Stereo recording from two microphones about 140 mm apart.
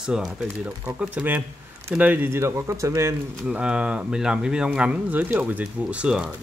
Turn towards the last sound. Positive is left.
turn(degrees=-5)  # may be behind; listen again after turning